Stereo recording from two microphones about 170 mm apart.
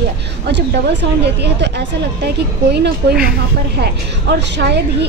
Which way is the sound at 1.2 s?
80° right.